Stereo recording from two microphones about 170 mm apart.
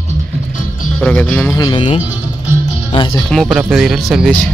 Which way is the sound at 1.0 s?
5° left (ahead or behind).